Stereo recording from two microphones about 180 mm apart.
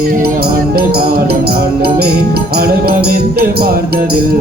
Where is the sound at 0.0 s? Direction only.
55° right (ahead or behind).